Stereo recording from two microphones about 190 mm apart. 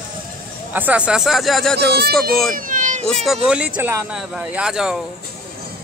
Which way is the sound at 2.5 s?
45° right (ahead or behind).